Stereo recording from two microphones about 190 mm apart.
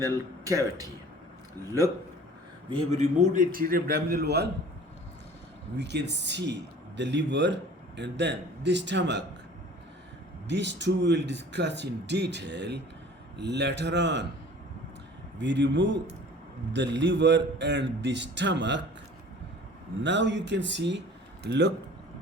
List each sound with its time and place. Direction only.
0.0 s speech: 20° right (ahead or behind)
2.6 s a man's voice: 30° right (ahead or behind); by 4.4 s 60° right (ahead or behind)
5.7 s speech: 65° right (ahead or behind)
10.5 s speech: 65° right (ahead or behind)
15.4 s speech: 70° right (ahead or behind)
20.0 s speech: 70° right (ahead or behind)